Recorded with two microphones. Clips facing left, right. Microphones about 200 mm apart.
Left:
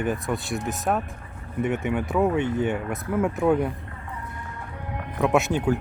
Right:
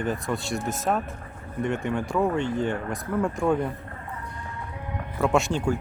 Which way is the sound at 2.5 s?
20° left (ahead or behind).